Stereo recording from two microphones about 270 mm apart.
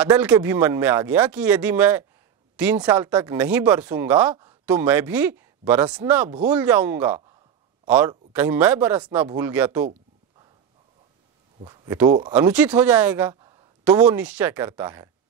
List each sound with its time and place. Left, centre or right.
0.1 s speech: centre
11.6 s speech: centre